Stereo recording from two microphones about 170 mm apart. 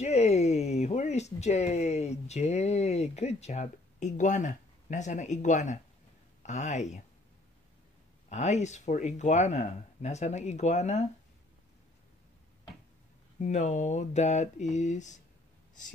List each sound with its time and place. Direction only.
0.0 s speech: 40° left (ahead or behind)
8.3 s speech: 40° left (ahead or behind)
13.4 s speech: 45° left (ahead or behind)